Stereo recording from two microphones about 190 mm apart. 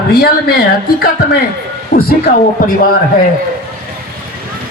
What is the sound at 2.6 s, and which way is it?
Speech, 45° left (ahead or behind).